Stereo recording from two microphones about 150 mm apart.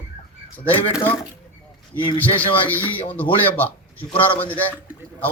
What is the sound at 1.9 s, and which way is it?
Speech, 30° left (ahead or behind).